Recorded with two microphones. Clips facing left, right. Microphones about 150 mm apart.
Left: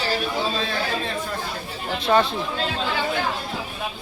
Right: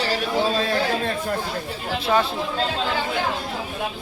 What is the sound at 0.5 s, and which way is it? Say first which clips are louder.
Speech: right 4 dB; 45° right (ahead or behind).